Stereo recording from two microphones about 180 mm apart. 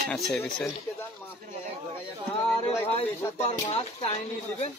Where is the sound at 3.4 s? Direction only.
35° left (ahead or behind).